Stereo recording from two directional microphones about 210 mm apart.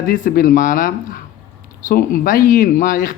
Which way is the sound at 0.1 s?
40° left (ahead or behind).